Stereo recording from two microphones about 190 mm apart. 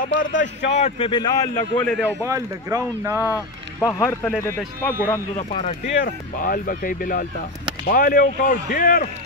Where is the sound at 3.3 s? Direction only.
15° left (ahead or behind).